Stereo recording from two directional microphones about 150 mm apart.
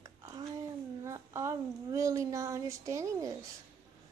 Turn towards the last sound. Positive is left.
turn(degrees=-20)  # may be behind; listen again after turning